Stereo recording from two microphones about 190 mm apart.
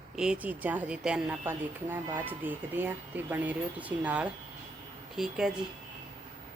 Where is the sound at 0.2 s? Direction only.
5° right (ahead or behind).